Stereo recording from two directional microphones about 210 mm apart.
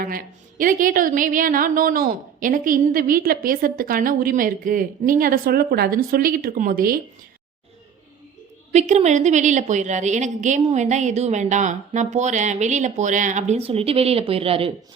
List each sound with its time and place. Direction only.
0.0 s a woman's voice: 40° right (ahead or behind)
8.7 s a woman's voice: 35° right (ahead or behind)